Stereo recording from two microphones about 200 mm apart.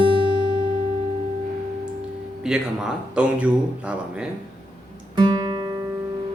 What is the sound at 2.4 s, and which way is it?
Speech, 5° right (ahead or behind).